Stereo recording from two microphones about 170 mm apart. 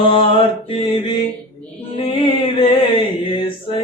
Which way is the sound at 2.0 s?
35° left (ahead or behind).